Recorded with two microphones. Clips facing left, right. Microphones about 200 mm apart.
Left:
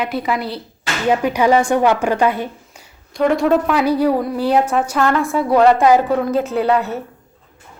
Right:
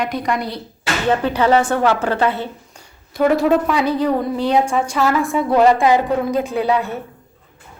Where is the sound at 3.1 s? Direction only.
5° right (ahead or behind).